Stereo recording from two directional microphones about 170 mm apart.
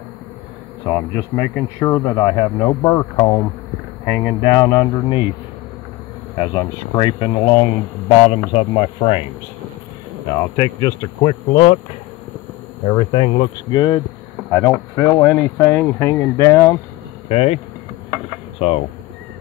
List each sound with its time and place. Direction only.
1.3 s speech: 15° left (ahead or behind)
6.3 s speech: 30° left (ahead or behind)
10.4 s speech: 20° left (ahead or behind)
11.2 s speech: 35° left (ahead or behind)
12.8 s speech: 35° left (ahead or behind); by 16.7 s 15° left (ahead or behind)
17.3 s speech: 40° left (ahead or behind)
18.6 s speech: 40° left (ahead or behind)